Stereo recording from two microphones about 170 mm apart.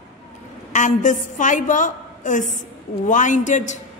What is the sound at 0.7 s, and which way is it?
A woman's voice, 45° left (ahead or behind).